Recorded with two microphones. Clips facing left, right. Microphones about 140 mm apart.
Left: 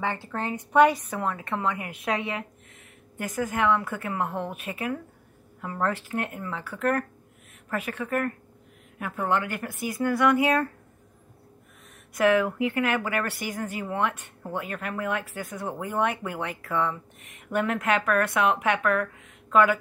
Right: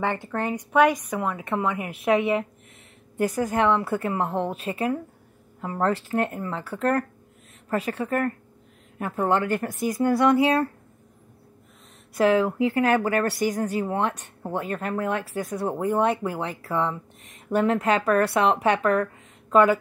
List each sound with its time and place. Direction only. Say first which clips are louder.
0.0 s a woman's voice: right 4 dB; 20° right (ahead or behind)
3.2 s a woman's voice: right 5 dB; 35° right (ahead or behind)
12.1 s a woman's voice: right 2 dB; 30° right (ahead or behind)